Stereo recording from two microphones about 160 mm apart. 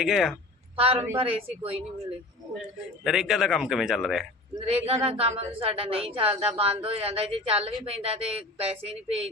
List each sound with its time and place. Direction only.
0.0 s a man's voice: centre (ahead or behind)
0.8 s a woman's voice: 35° right (ahead or behind)
2.6 s a man's voice: centre (ahead or behind)
4.6 s a woman's voice: 40° right (ahead or behind)